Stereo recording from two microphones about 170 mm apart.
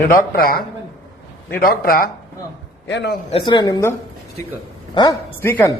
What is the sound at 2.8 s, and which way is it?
Speech, 90° left.